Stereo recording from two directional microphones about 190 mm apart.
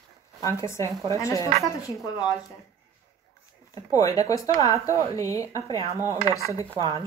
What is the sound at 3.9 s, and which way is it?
A woman's voice, 20° left (ahead or behind).